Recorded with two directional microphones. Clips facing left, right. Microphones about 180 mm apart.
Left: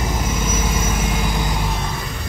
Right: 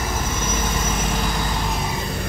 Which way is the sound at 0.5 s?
10° left (ahead or behind).